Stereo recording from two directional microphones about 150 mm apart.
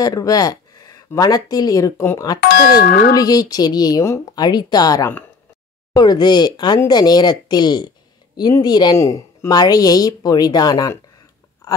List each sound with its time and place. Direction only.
0.0 s speech: 25° left (ahead or behind)
2.4 s speech: 90° left
3.2 s a woman's voice: 25° left (ahead or behind)
11.6 s a sound: 25° left (ahead or behind)